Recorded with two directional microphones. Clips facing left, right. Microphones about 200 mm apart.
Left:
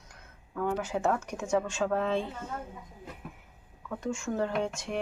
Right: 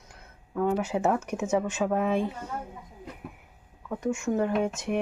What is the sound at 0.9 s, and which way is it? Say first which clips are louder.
Speech: right 3 dB; 20° right (ahead or behind).